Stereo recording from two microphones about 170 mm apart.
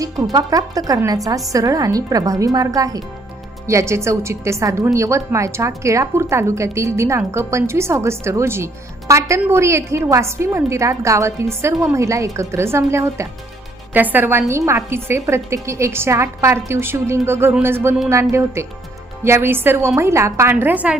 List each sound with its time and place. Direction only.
0.0 s a woman's voice: 20° right (ahead or behind)